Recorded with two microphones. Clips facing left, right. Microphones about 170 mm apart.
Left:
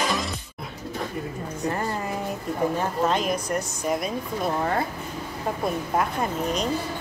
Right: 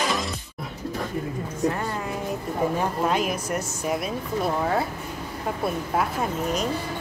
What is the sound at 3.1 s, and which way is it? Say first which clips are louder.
Speech: even; 10° right (ahead or behind).